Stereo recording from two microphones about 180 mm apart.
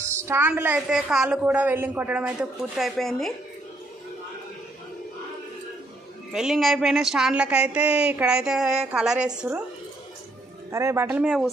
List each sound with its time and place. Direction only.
0.0 s a woman's voice: 15° right (ahead or behind); by 3.3 s centre (ahead or behind)
6.3 s speech: centre (ahead or behind)
10.7 s a woman's voice: 15° right (ahead or behind)